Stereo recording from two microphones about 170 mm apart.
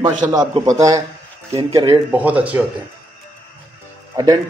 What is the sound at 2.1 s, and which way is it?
Speech, 10° right (ahead or behind).